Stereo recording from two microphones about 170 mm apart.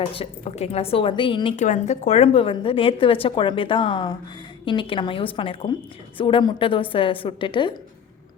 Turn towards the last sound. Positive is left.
turn(degrees=30)  # may be behind; listen again after turning